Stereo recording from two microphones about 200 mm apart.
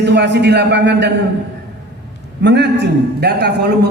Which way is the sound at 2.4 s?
60° right (ahead or behind).